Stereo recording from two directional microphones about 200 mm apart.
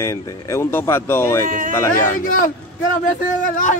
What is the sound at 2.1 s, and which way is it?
A man's voice, 45° left (ahead or behind).